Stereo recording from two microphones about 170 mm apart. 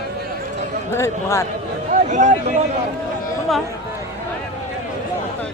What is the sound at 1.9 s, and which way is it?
Speech, 45° right (ahead or behind).